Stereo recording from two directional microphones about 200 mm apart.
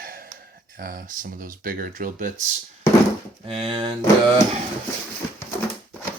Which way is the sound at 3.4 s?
30° right (ahead or behind).